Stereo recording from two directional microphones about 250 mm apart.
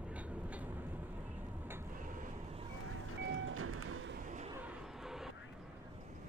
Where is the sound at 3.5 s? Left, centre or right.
Right.